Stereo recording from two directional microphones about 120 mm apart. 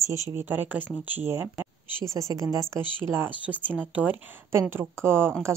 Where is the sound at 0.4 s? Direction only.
15° right (ahead or behind).